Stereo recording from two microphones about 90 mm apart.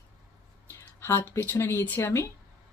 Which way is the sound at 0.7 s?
30° left (ahead or behind).